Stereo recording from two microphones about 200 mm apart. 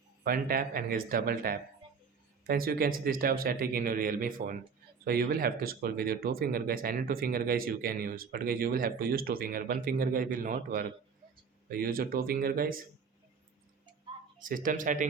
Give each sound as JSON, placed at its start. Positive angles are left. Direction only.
{"t": 0.3, "sound": "speech", "side_deg": -50}
{"t": 14.3, "sound": "speech", "side_deg": -40}